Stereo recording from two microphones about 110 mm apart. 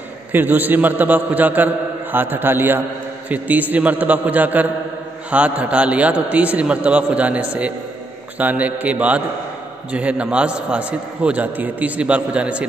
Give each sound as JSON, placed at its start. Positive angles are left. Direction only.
{"t": 0.3, "sound": "a man's voice", "side_deg": -15}